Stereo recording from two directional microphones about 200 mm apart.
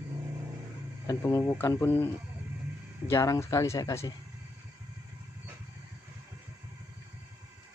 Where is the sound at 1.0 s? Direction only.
15° left (ahead or behind).